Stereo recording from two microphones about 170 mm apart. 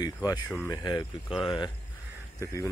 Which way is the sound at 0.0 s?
25° left (ahead or behind).